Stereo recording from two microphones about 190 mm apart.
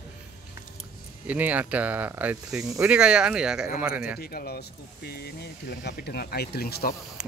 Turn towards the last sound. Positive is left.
turn(degrees=55)  # may be behind; listen again after turning